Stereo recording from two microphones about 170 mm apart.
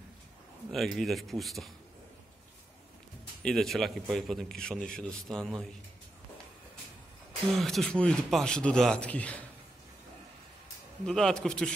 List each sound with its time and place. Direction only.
0.7 s a man's voice: centre (ahead or behind)
3.4 s a man's voice: centre (ahead or behind)
7.5 s a man's voice: centre (ahead or behind)
11.1 s a man's voice: 5° left (ahead or behind)